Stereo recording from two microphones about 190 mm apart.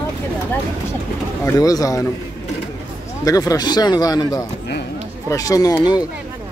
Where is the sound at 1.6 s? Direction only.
20° left (ahead or behind).